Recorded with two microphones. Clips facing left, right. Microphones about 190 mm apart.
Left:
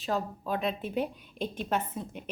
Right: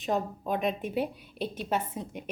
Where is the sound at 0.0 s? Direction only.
20° right (ahead or behind).